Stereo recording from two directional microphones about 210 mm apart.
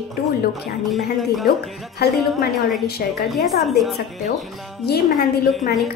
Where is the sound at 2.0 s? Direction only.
50° left (ahead or behind).